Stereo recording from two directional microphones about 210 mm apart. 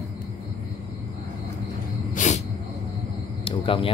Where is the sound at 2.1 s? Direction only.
35° left (ahead or behind).